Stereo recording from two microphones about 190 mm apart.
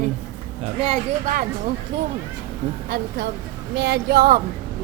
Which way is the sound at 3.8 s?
65° right (ahead or behind).